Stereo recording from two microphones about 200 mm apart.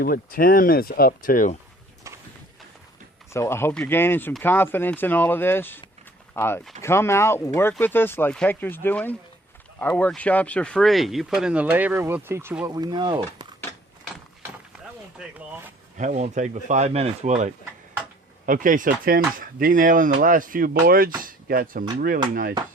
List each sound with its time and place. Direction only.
0.0 s speech: 45° left (ahead or behind)
2.0 s a sound: 15° right (ahead or behind)
3.3 s speech: 15° left (ahead or behind); by 13.5 s 20° right (ahead or behind)
16.0 s speech: 35° right (ahead or behind)